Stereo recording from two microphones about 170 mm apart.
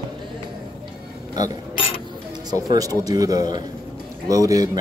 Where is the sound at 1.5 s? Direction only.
30° left (ahead or behind).